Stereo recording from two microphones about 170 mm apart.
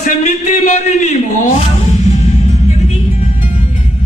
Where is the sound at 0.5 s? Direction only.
45° left (ahead or behind).